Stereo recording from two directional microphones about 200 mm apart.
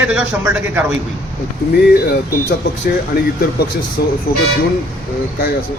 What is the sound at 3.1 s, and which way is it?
Speech, 50° left (ahead or behind).